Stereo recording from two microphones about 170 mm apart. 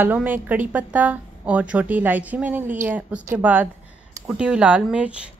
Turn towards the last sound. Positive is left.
turn(degrees=-5)  # may be behind; listen again after turning